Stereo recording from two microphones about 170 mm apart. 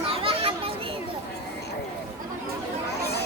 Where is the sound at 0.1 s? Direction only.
35° right (ahead or behind).